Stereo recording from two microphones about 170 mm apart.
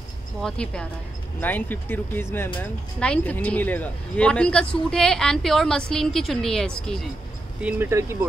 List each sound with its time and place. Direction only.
0.4 s speech: 5° left (ahead or behind)
7.6 s speech: 15° right (ahead or behind)